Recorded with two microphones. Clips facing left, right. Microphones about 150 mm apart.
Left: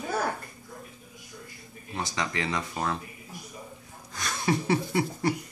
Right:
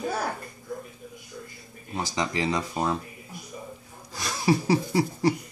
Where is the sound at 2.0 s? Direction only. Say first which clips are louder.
Right 5 dB; 30° right (ahead or behind).